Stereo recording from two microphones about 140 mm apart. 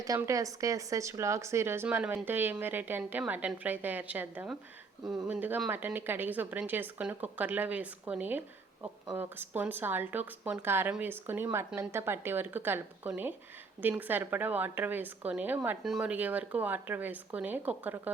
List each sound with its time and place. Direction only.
0.0 s a woman's voice: 25° right (ahead or behind)